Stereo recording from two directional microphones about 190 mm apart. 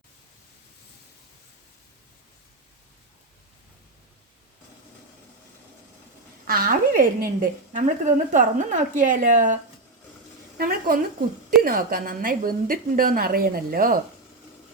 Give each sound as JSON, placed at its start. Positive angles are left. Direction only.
{"t": 6.5, "sound": "a woman's voice", "side_deg": -45}
{"t": 10.6, "sound": "a woman's voice", "side_deg": -50}